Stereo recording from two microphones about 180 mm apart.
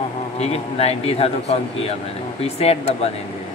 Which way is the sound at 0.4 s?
35° left (ahead or behind).